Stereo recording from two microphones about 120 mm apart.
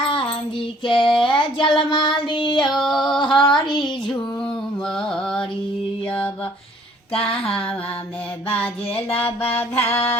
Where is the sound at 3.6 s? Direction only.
40° left (ahead or behind).